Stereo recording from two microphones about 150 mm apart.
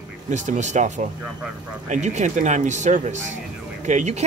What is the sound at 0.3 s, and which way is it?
Speech, 50° right (ahead or behind).